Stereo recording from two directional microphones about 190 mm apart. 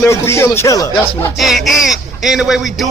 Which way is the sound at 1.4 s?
Centre (ahead or behind).